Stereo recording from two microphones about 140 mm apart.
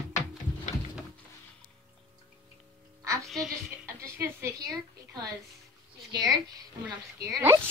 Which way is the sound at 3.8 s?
20° right (ahead or behind).